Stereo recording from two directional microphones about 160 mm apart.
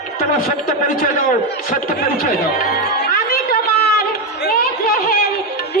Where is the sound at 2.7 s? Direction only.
70° left (ahead or behind).